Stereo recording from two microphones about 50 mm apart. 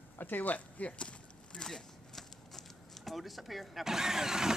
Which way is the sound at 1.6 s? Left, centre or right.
Centre.